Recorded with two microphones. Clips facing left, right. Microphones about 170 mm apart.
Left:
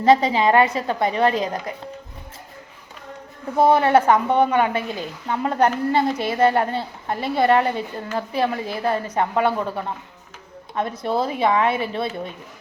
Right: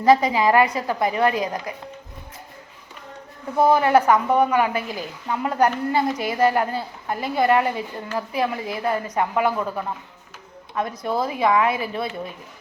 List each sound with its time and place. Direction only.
0.0 s speech: 25° left (ahead or behind)
3.6 s speech: 30° left (ahead or behind)